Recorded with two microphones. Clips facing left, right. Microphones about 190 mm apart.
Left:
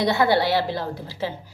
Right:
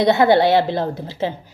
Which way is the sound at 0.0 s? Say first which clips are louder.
Right 6 dB; 20° right (ahead or behind).